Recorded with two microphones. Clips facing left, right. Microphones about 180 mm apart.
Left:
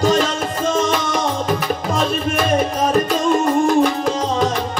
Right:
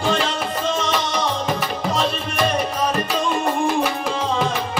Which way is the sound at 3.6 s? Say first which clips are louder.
Left 5 dB; 45° left (ahead or behind).